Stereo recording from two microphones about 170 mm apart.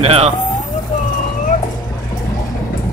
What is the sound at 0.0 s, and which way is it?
Speech, 35° right (ahead or behind).